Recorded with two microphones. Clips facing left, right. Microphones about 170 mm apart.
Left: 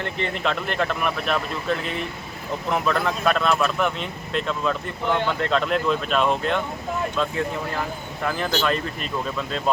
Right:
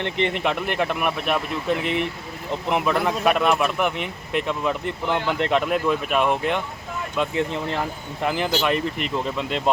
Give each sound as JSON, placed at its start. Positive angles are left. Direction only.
{"t": 0.0, "sound": "speech", "side_deg": -20}